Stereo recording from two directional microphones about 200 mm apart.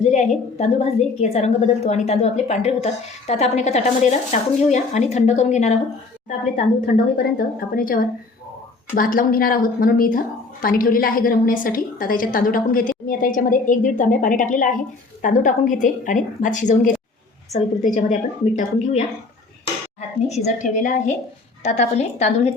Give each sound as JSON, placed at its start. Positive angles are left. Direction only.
{"t": 0.0, "sound": "a woman's voice", "side_deg": 35}